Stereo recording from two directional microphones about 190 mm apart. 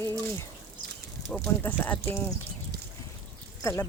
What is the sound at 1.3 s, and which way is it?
Speech, 10° left (ahead or behind).